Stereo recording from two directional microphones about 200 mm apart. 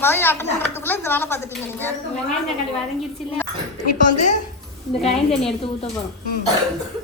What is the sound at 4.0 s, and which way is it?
Speech, 40° left (ahead or behind).